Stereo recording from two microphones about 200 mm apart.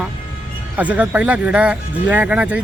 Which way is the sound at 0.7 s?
5° right (ahead or behind).